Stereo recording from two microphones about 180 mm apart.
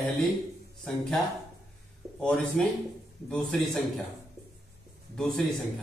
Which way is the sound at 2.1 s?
5° left (ahead or behind).